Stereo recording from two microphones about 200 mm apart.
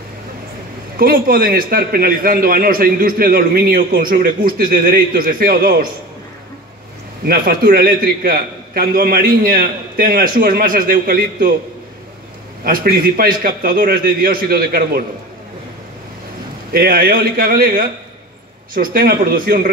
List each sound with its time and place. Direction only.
0.9 s a man's voice: 45° right (ahead or behind)
7.2 s a man's voice: 45° right (ahead or behind)
12.6 s a man's voice: 45° right (ahead or behind)
16.7 s a man's voice: 50° right (ahead or behind)